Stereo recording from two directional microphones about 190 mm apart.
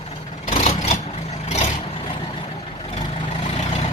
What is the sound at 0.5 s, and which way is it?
Vehicle, 30° left (ahead or behind).